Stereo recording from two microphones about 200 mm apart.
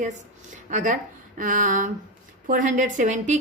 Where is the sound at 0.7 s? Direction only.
40° right (ahead or behind).